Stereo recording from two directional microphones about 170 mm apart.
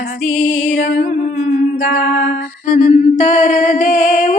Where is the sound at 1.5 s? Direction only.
50° left (ahead or behind).